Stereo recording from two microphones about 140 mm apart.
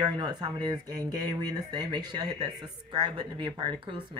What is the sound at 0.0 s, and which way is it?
Speech, 30° right (ahead or behind).